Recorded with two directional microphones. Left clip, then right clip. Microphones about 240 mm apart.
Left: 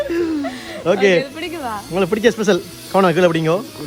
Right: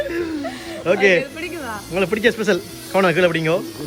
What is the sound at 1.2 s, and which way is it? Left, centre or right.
Speech, left.